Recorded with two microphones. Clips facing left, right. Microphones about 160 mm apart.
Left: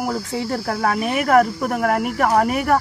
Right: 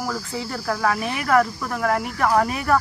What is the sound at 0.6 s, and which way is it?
Speech, 35° left (ahead or behind).